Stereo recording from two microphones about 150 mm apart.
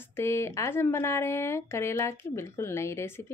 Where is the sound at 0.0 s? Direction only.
15° left (ahead or behind).